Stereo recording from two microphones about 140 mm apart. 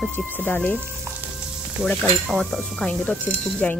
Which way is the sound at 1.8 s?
Centre (ahead or behind).